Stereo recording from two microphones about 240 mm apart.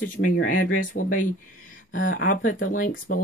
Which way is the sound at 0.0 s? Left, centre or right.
Left.